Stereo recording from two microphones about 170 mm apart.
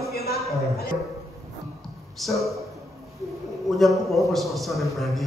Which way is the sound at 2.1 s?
Centre (ahead or behind).